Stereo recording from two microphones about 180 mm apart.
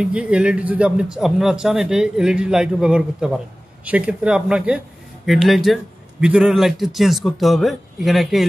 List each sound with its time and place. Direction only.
0.0 s speech: 5° right (ahead or behind)